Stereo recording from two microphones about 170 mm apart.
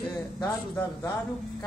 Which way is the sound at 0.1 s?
25° left (ahead or behind).